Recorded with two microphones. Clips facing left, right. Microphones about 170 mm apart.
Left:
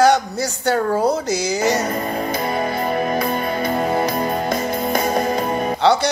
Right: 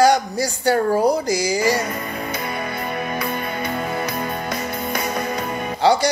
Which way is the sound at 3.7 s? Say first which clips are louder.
Left 7 dB; 35° left (ahead or behind).